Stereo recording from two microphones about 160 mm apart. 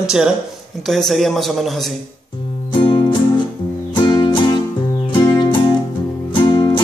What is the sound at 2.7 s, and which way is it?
Music, 30° left (ahead or behind).